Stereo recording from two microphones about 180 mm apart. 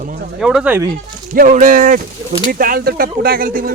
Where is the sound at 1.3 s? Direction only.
45° right (ahead or behind).